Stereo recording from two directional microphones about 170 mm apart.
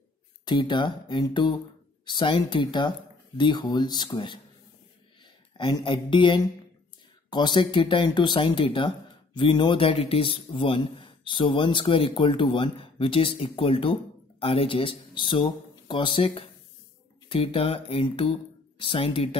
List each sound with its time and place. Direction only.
0.5 s speech: 25° left (ahead or behind)
5.6 s speech: 30° left (ahead or behind)